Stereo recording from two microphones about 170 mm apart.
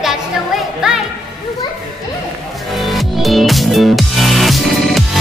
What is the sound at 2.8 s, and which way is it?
Music, centre (ahead or behind).